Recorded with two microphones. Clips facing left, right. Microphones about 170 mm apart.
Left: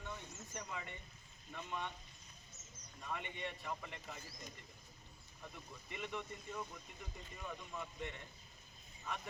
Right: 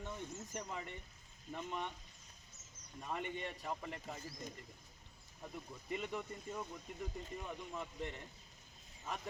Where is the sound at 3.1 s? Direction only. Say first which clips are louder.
Right 3 dB; 40° right (ahead or behind).